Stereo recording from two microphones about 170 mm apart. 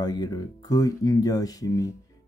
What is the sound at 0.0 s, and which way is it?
Speech, 25° left (ahead or behind).